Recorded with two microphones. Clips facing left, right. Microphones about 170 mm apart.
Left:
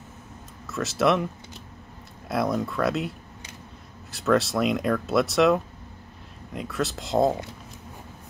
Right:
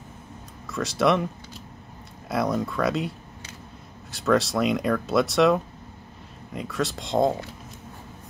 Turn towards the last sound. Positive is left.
turn(degrees=5)  # may be behind; listen again after turning